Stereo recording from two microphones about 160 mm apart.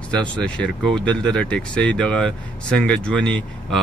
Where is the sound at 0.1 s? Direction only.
5° left (ahead or behind).